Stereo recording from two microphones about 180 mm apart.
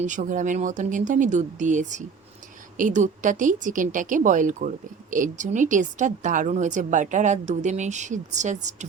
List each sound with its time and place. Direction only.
0.0 s a woman's voice: 45° right (ahead or behind)